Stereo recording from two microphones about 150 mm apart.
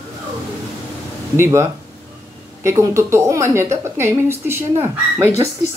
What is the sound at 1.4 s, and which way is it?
A woman's voice, 20° right (ahead or behind).